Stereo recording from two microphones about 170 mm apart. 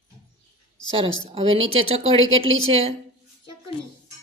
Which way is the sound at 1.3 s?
35° right (ahead or behind).